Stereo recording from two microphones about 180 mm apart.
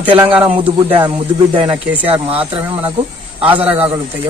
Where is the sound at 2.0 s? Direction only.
30° right (ahead or behind).